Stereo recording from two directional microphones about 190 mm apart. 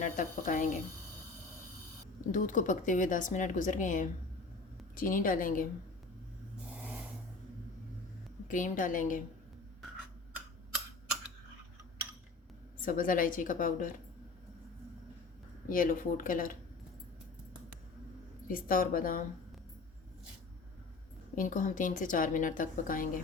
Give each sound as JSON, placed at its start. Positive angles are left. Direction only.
{"t": 0.0, "sound": "speech", "side_deg": 45}
{"t": 2.3, "sound": "speech", "side_deg": 45}
{"t": 6.7, "sound": "vehicle", "side_deg": -5}
{"t": 8.4, "sound": "speech", "side_deg": 45}
{"t": 12.8, "sound": "speech", "side_deg": 45}
{"t": 15.7, "sound": "speech", "side_deg": 45}
{"t": 18.5, "sound": "speech", "side_deg": 45}
{"t": 21.3, "sound": "speech", "side_deg": 45}